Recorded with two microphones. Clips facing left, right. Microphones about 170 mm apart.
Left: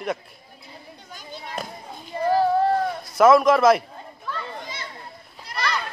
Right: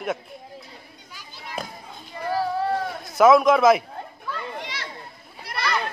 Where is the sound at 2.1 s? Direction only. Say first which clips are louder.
Left 7 dB; 35° left (ahead or behind).